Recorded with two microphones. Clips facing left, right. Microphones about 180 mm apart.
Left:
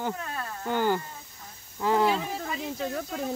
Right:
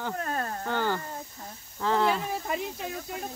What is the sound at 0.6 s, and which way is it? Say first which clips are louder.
Speech: left 5 dB; 15° left (ahead or behind).